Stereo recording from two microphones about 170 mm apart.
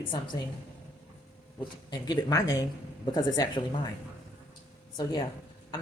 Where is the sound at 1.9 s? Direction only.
20° left (ahead or behind).